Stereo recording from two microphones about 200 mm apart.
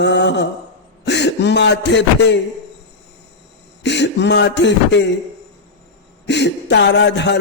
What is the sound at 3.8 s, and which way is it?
A man's voice, 60° left (ahead or behind).